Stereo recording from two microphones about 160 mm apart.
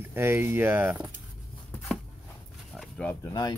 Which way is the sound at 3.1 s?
20° left (ahead or behind).